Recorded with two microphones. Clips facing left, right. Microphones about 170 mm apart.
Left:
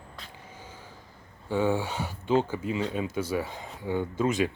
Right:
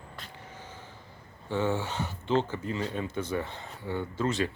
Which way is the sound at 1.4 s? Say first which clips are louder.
Left 3 dB; 10° left (ahead or behind).